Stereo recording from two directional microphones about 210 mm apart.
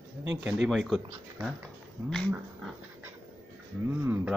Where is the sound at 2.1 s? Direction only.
Centre (ahead or behind).